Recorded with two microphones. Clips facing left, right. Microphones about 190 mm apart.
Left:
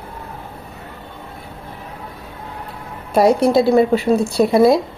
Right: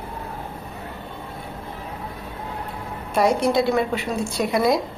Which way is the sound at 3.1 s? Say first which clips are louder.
Left 6 dB; 35° left (ahead or behind).